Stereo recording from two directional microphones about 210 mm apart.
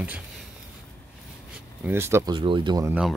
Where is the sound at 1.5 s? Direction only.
10° right (ahead or behind).